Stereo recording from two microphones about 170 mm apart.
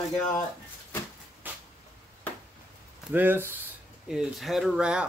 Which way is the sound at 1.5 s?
10° right (ahead or behind).